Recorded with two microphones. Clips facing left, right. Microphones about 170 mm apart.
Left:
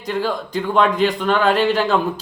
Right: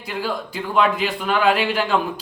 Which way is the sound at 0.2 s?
5° right (ahead or behind).